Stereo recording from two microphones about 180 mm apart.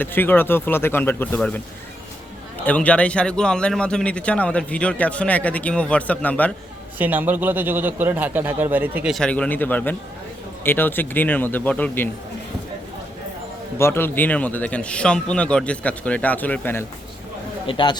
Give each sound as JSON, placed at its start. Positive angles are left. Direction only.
{"t": 0.0, "sound": "a man's voice", "side_deg": 10}
{"t": 2.6, "sound": "a man's voice", "side_deg": 5}
{"t": 7.0, "sound": "a man's voice", "side_deg": -10}
{"t": 9.1, "sound": "a man's voice", "side_deg": 5}
{"t": 13.7, "sound": "a man's voice", "side_deg": 15}
{"t": 17.7, "sound": "speech", "side_deg": 25}